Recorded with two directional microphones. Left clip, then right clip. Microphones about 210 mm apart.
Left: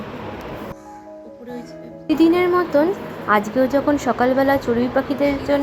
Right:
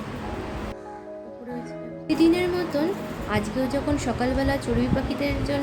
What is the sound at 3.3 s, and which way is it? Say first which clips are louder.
A woman's voice: left 10 dB; 15° left (ahead or behind).